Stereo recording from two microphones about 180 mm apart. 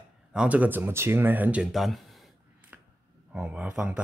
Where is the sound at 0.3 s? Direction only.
5° right (ahead or behind).